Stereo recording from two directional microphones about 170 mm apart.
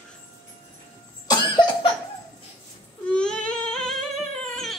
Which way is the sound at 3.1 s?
5° left (ahead or behind).